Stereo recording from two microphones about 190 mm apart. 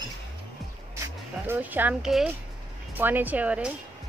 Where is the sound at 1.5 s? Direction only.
10° right (ahead or behind).